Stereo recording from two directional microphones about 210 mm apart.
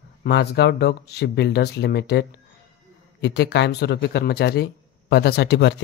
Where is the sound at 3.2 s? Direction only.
55° left (ahead or behind).